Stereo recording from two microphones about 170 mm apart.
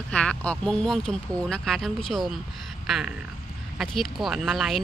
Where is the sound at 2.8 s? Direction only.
5° right (ahead or behind).